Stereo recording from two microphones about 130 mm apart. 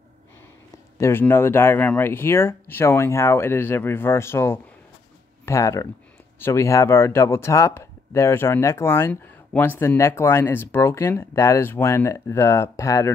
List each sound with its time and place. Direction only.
0.9 s speech: 20° left (ahead or behind)